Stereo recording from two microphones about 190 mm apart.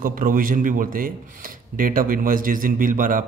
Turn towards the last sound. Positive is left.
turn(degrees=-45)  # may be behind; listen again after turning